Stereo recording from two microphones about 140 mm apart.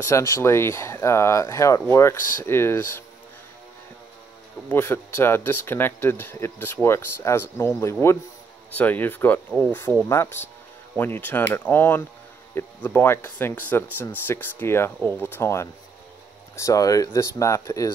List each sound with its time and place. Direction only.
0.0 s speech: 20° left (ahead or behind)
4.6 s speech: 15° left (ahead or behind)